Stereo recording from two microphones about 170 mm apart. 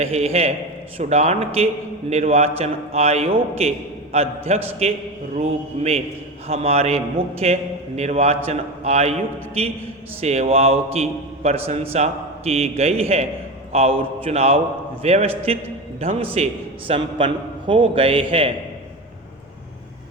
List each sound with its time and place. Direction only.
0.0 s a man's voice: 35° right (ahead or behind)
10.2 s a man's voice: 40° right (ahead or behind)